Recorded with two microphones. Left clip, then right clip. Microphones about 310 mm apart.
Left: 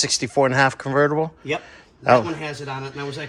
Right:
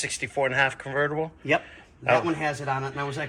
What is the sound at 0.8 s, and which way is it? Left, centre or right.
Speech, left.